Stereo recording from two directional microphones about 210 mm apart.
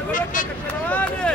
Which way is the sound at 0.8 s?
5° left (ahead or behind).